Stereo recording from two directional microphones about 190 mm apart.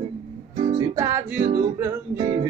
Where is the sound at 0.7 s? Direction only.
15° right (ahead or behind).